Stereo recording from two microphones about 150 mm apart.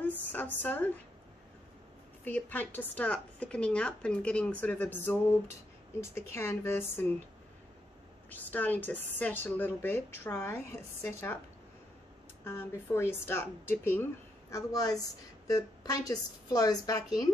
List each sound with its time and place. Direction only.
0.3 s a woman's voice: 10° left (ahead or behind)
2.2 s speech: 10° left (ahead or behind)
8.3 s speech: 10° left (ahead or behind)
12.4 s speech: 15° left (ahead or behind)
14.5 s a woman's voice: 25° left (ahead or behind)